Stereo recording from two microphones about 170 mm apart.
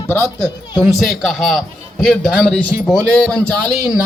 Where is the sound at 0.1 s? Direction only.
20° left (ahead or behind).